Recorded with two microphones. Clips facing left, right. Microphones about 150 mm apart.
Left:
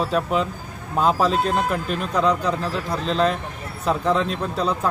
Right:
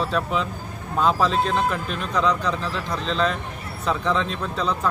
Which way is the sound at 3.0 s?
40° left (ahead or behind).